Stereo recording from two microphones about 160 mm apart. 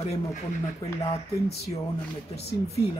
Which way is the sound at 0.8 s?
20° left (ahead or behind).